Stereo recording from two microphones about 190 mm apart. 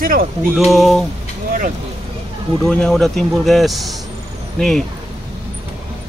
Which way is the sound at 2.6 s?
5° left (ahead or behind).